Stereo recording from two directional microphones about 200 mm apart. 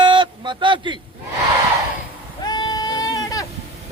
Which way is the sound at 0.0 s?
25° right (ahead or behind).